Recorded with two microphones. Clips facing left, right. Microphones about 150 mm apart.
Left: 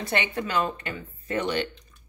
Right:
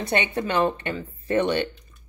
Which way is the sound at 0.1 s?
25° right (ahead or behind).